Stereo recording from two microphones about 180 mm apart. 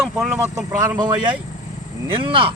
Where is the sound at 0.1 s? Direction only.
5° right (ahead or behind).